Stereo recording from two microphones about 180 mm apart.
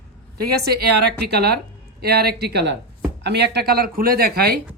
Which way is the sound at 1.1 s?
65° right (ahead or behind).